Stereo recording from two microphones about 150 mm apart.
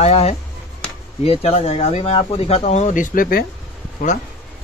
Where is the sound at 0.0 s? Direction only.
45° left (ahead or behind); by 3.4 s 75° left (ahead or behind).